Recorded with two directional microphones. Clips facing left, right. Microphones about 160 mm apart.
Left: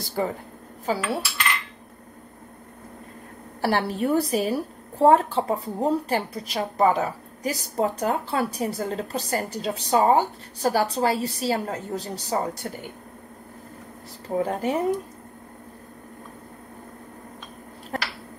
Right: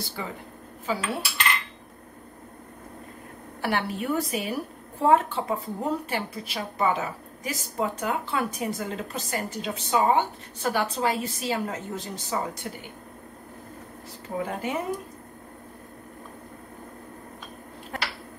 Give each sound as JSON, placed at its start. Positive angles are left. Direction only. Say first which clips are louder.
{"t": 0.0, "sound": "speech", "louder": "left 8 dB", "side_deg": 45}
{"t": 0.8, "sound": "a woman's voice", "louder": "left 3 dB", "side_deg": 35}
{"t": 3.6, "sound": "a woman's voice", "louder": "left 4 dB", "side_deg": 35}
{"t": 14.4, "sound": "a woman's voice", "louder": "left 5 dB", "side_deg": 35}